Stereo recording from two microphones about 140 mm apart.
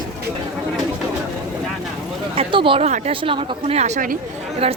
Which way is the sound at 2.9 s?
40° right (ahead or behind).